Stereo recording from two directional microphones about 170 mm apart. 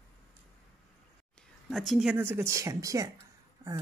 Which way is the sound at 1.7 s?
Centre (ahead or behind).